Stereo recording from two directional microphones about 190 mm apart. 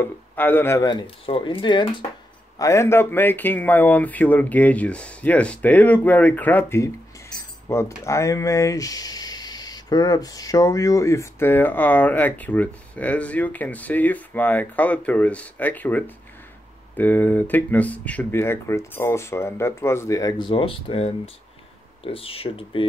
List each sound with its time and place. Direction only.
0.0 s speech: 10° left (ahead or behind); by 2.0 s 25° left (ahead or behind)
2.6 s speech: 15° left (ahead or behind)